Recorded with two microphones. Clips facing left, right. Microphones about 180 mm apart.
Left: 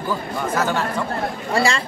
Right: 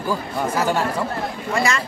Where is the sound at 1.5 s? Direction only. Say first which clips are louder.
Left 2 dB; 30° left (ahead or behind).